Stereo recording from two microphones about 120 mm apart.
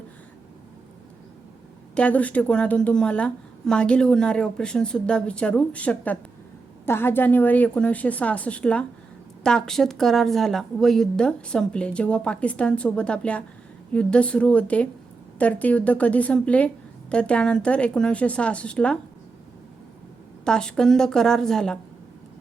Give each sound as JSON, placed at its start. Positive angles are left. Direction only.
{"t": 2.0, "sound": "a woman's voice", "side_deg": 10}
{"t": 20.4, "sound": "a woman's voice", "side_deg": 5}